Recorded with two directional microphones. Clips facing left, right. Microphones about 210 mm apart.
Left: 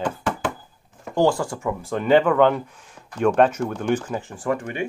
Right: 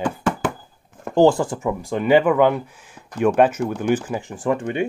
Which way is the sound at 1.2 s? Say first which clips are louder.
Right 5 dB; 20° right (ahead or behind).